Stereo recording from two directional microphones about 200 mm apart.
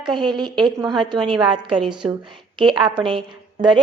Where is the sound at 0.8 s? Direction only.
20° right (ahead or behind).